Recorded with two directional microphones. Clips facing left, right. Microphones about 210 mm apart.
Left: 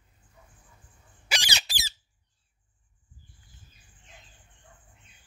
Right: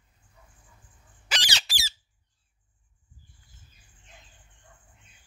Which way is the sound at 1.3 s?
10° left (ahead or behind).